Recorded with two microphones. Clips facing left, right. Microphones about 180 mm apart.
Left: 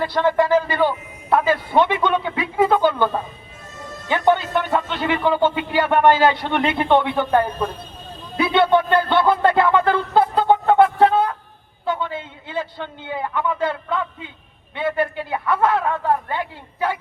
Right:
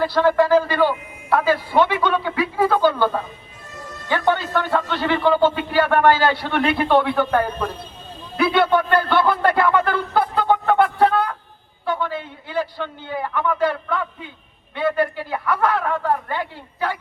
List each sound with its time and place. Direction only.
0.0 s a man's voice: 20° left (ahead or behind)
4.1 s speech: 20° left (ahead or behind)
8.4 s a sound: 25° left (ahead or behind)
11.9 s a man's voice: 20° left (ahead or behind)